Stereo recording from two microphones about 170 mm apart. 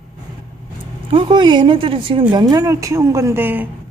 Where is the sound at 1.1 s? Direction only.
30° right (ahead or behind); by 3.7 s 10° right (ahead or behind).